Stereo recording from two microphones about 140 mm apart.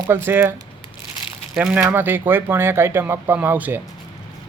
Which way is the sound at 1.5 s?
10° right (ahead or behind).